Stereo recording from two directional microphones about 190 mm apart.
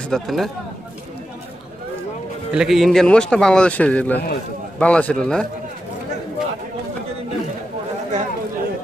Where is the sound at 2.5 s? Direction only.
Centre (ahead or behind).